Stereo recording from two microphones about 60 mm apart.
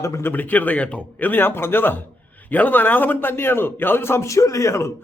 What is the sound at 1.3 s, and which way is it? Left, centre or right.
A man's voice, left.